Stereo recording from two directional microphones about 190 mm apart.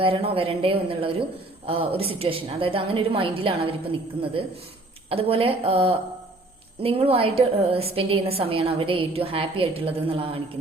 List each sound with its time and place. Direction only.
0.0 s a woman's voice: 30° right (ahead or behind)
5.0 s a woman's voice: 30° right (ahead or behind)